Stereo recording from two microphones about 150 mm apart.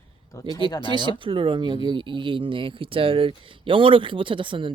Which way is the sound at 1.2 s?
35° right (ahead or behind).